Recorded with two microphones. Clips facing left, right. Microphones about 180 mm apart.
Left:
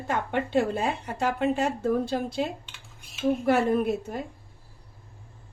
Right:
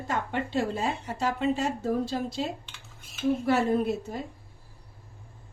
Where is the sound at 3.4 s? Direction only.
55° left (ahead or behind).